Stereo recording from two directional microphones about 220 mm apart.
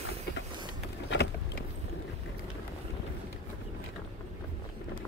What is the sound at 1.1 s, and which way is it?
Vehicle, 50° left (ahead or behind).